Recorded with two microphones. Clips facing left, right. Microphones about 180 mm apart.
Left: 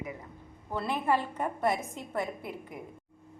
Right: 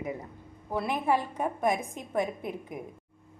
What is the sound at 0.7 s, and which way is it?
A woman's voice, 15° right (ahead or behind).